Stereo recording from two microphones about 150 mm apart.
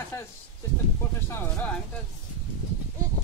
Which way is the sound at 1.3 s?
15° left (ahead or behind).